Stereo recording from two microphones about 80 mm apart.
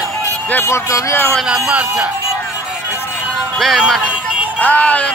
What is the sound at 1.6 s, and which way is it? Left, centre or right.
Speech, centre.